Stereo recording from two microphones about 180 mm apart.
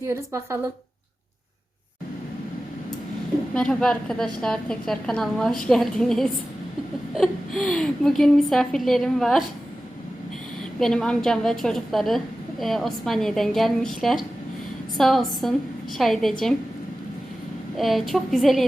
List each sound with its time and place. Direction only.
0.1 s speech: 15° right (ahead or behind)
3.5 s a woman's voice: 5° left (ahead or behind)
10.8 s a woman's voice: 5° left (ahead or behind)
17.7 s a woman's voice: centre (ahead or behind)